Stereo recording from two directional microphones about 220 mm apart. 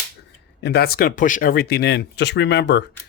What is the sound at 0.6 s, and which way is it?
Speech, 45° left (ahead or behind).